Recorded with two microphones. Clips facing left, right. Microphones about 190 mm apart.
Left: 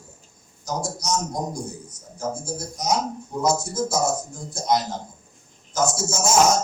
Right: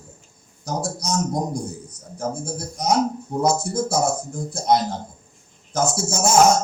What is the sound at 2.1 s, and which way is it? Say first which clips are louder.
Speech: right 2 dB; 60° right (ahead or behind).